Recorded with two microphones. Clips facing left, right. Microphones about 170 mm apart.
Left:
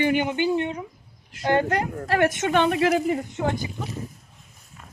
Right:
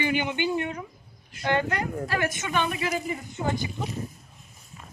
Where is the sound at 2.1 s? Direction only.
65° left (ahead or behind).